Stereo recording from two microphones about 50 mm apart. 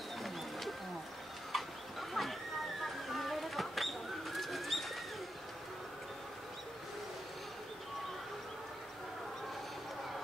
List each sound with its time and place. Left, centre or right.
0.2 s wild animals: centre
1.5 s a sound: centre
2.8 s bird: centre